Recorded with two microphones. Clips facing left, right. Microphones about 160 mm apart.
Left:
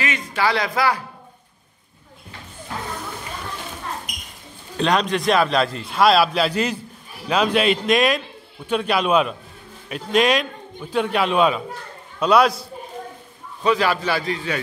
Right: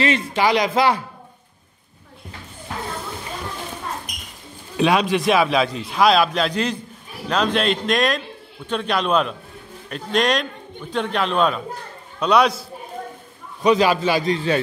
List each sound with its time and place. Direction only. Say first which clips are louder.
0.0 s a sound: right 7 dB; 30° right (ahead or behind)
0.4 s a man's voice: right 2 dB; 20° right (ahead or behind)
4.7 s a man's voice: right 2 dB; 5° right (ahead or behind)
13.6 s a man's voice: right 3 dB; 15° right (ahead or behind)